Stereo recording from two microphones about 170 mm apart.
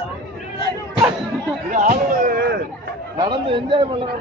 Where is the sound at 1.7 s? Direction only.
50° right (ahead or behind); by 2.6 s 65° right (ahead or behind).